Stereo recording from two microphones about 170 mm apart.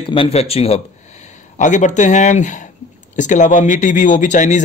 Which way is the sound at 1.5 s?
45° left (ahead or behind).